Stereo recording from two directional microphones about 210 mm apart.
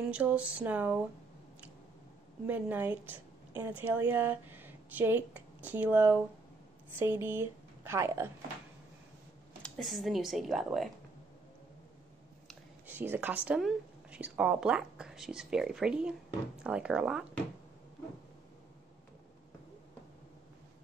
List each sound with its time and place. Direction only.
0.1 s speech: 5° right (ahead or behind)
2.4 s a woman's voice: 10° right (ahead or behind)
9.6 s a woman's voice: centre (ahead or behind)
12.4 s a woman's voice: 10° right (ahead or behind)